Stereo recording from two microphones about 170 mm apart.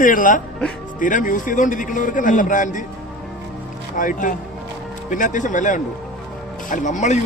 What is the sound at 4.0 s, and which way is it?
Speech, 50° left (ahead or behind).